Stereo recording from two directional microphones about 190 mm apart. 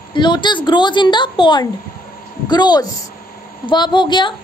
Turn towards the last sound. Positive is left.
turn(degrees=25)  # may be behind; listen again after turning